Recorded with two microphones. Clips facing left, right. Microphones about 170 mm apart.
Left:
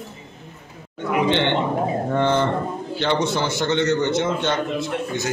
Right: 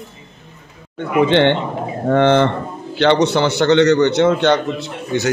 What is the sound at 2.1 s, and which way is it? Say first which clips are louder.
A man's voice: right 8 dB; 80° right.